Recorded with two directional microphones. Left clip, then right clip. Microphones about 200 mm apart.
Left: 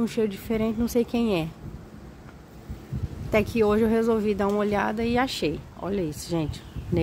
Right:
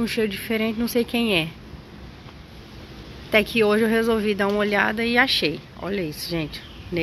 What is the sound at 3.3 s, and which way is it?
Speech, 10° left (ahead or behind).